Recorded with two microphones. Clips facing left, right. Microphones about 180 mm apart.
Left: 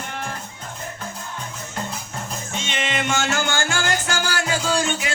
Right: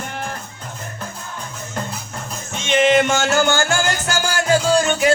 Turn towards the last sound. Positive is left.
turn(degrees=-45)  # may be behind; listen again after turning